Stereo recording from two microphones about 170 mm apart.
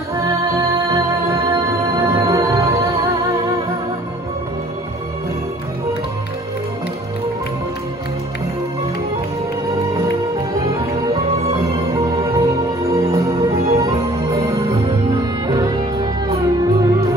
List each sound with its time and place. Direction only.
0.7 s music: 20° right (ahead or behind)
10.6 s music: 20° right (ahead or behind)